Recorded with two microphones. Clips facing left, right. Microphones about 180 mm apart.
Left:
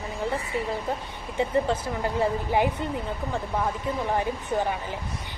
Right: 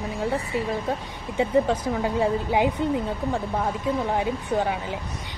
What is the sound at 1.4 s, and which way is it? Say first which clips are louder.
Speech: right 3 dB; 15° right (ahead or behind).